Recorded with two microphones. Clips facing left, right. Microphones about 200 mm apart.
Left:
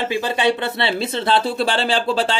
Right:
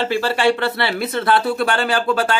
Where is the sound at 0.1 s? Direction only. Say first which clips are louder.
Right 1 dB; 20° left (ahead or behind).